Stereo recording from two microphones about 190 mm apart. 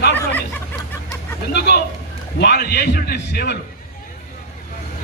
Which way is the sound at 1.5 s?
60° left (ahead or behind).